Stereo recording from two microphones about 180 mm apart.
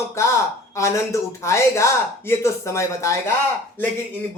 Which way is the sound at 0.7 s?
15° left (ahead or behind).